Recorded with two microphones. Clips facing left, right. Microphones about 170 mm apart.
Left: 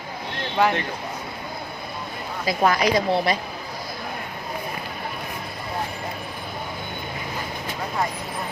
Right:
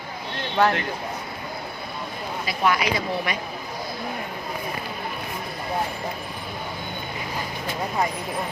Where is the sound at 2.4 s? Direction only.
40° left (ahead or behind).